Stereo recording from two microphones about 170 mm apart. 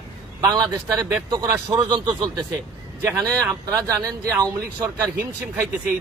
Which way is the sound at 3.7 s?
20° right (ahead or behind).